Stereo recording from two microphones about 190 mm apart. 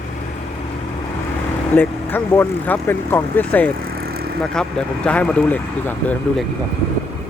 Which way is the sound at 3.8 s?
55° right (ahead or behind).